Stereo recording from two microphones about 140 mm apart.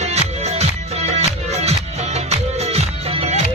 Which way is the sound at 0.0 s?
50° right (ahead or behind).